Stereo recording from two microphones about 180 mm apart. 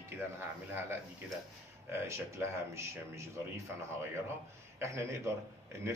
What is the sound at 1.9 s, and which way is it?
Speech, 15° right (ahead or behind).